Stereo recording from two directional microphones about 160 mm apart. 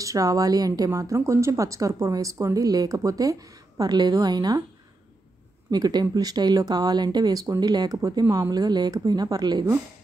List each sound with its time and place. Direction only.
0.0 s speech: 20° right (ahead or behind)
5.7 s speech: 25° right (ahead or behind)